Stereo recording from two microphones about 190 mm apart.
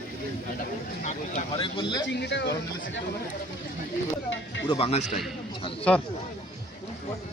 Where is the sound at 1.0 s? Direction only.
40° left (ahead or behind).